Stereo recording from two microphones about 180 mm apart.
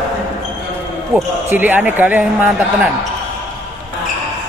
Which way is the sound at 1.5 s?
10° right (ahead or behind).